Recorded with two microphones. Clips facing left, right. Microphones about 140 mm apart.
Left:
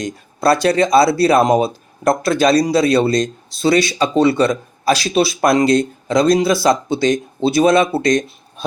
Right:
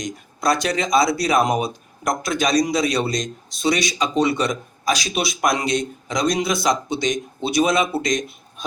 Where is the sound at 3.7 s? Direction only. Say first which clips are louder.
Left 7 dB; 30° left (ahead or behind).